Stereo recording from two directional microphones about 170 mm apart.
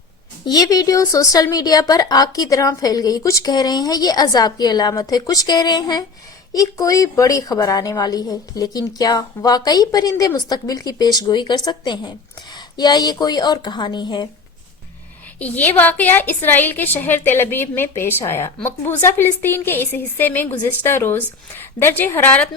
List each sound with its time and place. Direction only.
0.4 s speech: 20° left (ahead or behind)
15.4 s a woman's voice: 10° left (ahead or behind)